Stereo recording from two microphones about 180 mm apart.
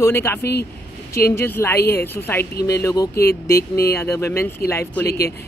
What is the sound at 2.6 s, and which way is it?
Speech, 65° left (ahead or behind).